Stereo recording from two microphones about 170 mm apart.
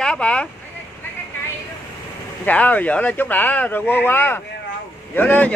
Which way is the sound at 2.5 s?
10° left (ahead or behind).